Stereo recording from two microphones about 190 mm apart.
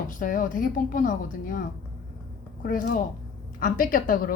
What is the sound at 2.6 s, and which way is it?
Speech, 50° left (ahead or behind).